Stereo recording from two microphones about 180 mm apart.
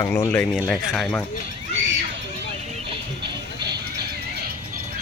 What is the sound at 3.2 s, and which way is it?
Music, 65° right (ahead or behind).